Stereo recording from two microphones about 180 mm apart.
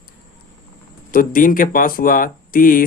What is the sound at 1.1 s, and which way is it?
Speech, 50° left (ahead or behind).